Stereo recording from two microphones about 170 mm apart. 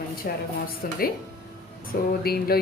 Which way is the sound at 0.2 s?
65° left (ahead or behind).